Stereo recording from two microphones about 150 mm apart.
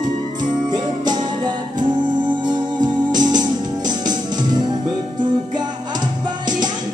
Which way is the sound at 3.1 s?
25° right (ahead or behind).